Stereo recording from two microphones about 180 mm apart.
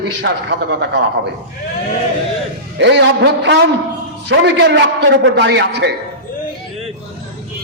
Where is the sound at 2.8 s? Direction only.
70° right (ahead or behind).